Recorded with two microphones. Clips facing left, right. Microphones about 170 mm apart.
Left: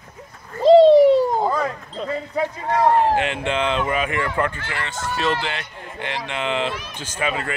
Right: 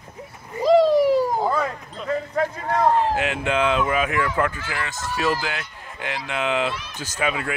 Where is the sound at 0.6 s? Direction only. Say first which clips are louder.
Left 6 dB; 25° left (ahead or behind).